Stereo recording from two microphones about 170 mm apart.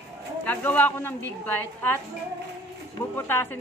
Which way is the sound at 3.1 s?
10° left (ahead or behind).